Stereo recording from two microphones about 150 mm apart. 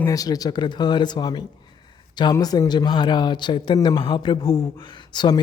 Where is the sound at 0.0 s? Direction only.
25° left (ahead or behind).